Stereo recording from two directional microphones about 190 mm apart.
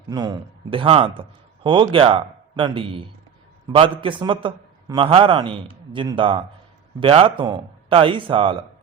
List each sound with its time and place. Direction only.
0.1 s a man's voice: 20° right (ahead or behind)